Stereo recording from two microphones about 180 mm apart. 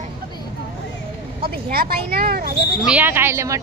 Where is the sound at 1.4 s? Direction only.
60° right (ahead or behind).